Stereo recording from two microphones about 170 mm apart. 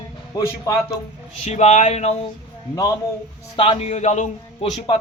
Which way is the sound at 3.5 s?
30° left (ahead or behind).